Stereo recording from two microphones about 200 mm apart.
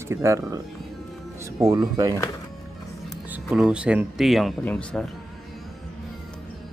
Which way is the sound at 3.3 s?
Centre (ahead or behind).